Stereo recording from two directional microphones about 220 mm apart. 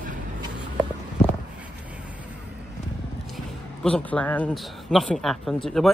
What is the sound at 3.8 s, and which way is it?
Speech, 5° left (ahead or behind).